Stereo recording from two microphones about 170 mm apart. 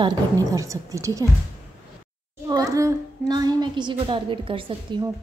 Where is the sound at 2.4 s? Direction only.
20° right (ahead or behind).